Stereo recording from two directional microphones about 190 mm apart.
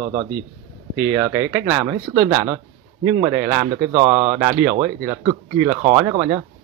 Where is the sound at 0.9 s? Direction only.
10° right (ahead or behind).